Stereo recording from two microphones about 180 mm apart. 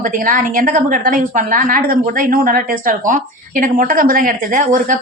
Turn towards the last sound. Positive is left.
turn(degrees=-45)  # may be behind; listen again after turning